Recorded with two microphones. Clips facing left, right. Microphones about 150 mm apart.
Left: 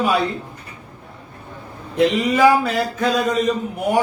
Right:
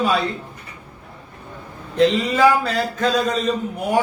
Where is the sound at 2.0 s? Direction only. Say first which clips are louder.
Left 1 dB; 15° left (ahead or behind).